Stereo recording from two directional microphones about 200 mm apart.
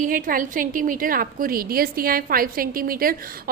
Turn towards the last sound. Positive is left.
turn(degrees=-45)  # may be behind; listen again after turning